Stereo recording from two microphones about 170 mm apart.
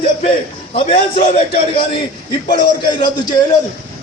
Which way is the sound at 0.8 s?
40° left (ahead or behind).